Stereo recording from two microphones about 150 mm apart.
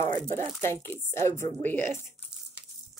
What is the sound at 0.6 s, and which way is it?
Speech, 15° left (ahead or behind).